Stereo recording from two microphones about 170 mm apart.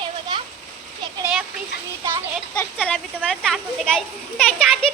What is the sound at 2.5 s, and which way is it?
Speech, 10° left (ahead or behind).